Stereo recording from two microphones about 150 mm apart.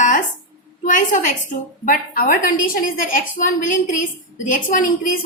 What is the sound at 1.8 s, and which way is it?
A woman's voice, 70° left (ahead or behind).